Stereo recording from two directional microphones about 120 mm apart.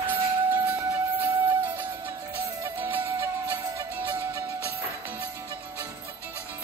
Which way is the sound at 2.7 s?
15° right (ahead or behind).